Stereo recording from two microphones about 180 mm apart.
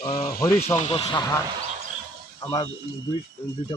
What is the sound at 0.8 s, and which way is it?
Speech, 35° left (ahead or behind).